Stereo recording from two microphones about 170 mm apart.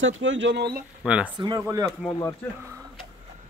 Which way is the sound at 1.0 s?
5° right (ahead or behind).